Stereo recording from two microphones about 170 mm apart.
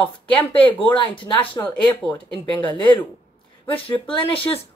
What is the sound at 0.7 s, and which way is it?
Speech, 30° left (ahead or behind).